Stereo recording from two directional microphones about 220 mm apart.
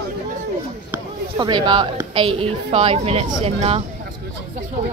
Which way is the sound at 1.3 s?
20° right (ahead or behind).